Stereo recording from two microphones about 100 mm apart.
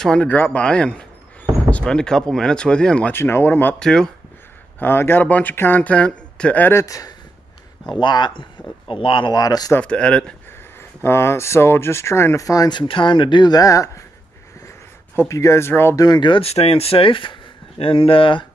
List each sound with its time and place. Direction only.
0.0 s speech: 10° left (ahead or behind)
3.1 s speech: 25° left (ahead or behind)
3.8 s speech: 5° left (ahead or behind)
4.7 s speech: 20° left (ahead or behind)
6.7 s speech: 30° left (ahead or behind)
7.9 s speech: 50° left (ahead or behind)
9.8 s speech: 10° left (ahead or behind)
11.0 s speech: 25° left (ahead or behind); by 12.8 s 40° left (ahead or behind)
12.8 s speech: 55° left (ahead or behind); by 14.0 s 35° left (ahead or behind)
15.1 s speech: 30° left (ahead or behind)
16.0 s speech: 45° left (ahead or behind)
16.4 s speech: 90° left; by 18.4 s 60° left (ahead or behind)